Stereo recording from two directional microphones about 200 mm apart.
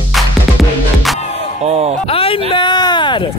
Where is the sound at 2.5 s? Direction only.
20° left (ahead or behind).